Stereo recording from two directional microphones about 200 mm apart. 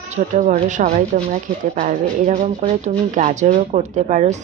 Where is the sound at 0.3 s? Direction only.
35° right (ahead or behind).